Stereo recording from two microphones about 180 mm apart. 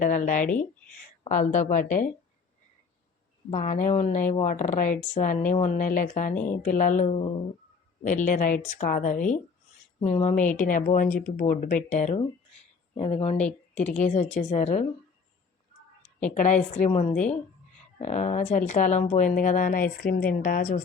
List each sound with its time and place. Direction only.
0.0 s speech: 45° left (ahead or behind)
0.4 s speech: 5° left (ahead or behind)
1.3 s speech: 40° left (ahead or behind)
3.5 s speech: 40° left (ahead or behind)
13.4 s speech: 5° left (ahead or behind)
14.1 s speech: 40° left (ahead or behind)
16.3 s speech: 40° left (ahead or behind)
17.2 s speech: 5° left (ahead or behind)
18.0 s speech: 40° left (ahead or behind)